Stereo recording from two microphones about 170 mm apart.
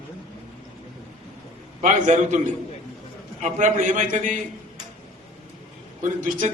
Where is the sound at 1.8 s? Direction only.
45° right (ahead or behind).